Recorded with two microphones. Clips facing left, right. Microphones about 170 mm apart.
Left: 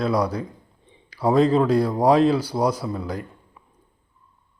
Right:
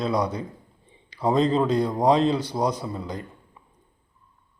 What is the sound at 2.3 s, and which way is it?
Speech, 20° right (ahead or behind).